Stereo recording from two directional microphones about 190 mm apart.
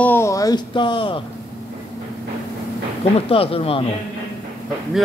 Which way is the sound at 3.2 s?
30° left (ahead or behind).